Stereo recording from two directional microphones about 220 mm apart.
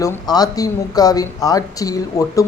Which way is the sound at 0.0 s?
15° left (ahead or behind).